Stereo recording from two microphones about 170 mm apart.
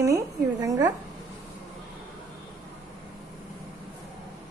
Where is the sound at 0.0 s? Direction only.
20° right (ahead or behind).